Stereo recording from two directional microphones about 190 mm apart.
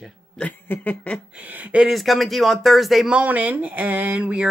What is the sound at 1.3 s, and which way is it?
Speech, 10° right (ahead or behind).